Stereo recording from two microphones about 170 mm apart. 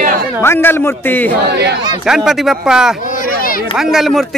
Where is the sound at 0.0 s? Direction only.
55° right (ahead or behind).